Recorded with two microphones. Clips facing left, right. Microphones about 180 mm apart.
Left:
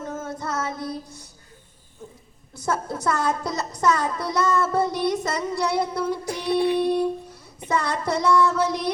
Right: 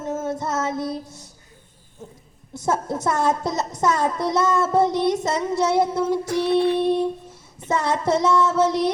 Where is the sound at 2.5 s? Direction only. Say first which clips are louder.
Right 3 dB; 25° right (ahead or behind).